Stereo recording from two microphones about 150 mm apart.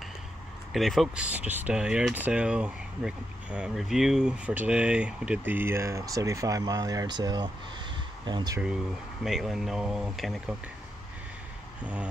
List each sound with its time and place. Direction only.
0.7 s speech: centre (ahead or behind); by 8.5 s 30° right (ahead or behind)
9.2 s speech: centre (ahead or behind)
11.8 s speech: 10° right (ahead or behind)